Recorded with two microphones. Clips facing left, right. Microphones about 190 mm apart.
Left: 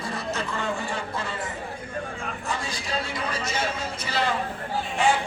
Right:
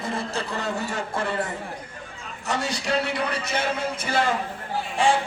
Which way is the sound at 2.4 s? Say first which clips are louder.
Right 8 dB; 75° right (ahead or behind).